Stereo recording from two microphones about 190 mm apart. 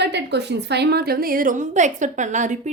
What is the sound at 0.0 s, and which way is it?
A woman's voice, 65° right (ahead or behind).